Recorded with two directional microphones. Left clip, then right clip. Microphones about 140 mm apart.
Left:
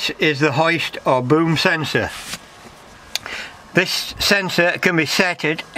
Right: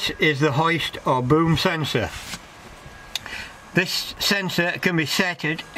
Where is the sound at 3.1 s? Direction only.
40° left (ahead or behind).